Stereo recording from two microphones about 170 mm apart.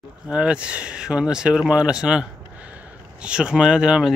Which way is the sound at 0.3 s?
5° right (ahead or behind).